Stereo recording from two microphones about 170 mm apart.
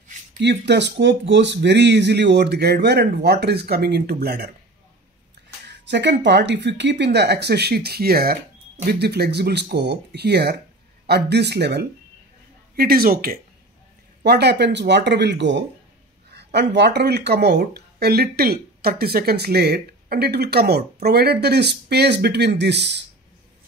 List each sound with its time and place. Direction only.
0.4 s speech: 90° right; by 4.5 s 70° right (ahead or behind)
5.7 s speech: 90° right
12.7 s speech: 60° right (ahead or behind)
14.2 s speech: 75° right (ahead or behind)